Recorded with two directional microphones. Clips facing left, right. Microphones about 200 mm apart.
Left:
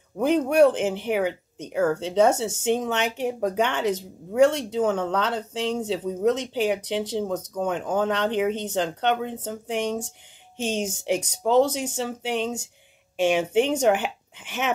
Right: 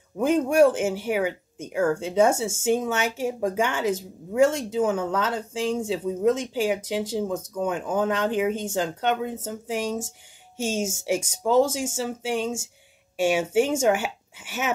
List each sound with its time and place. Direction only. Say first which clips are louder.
0.2 s speech: even; 10° right (ahead or behind)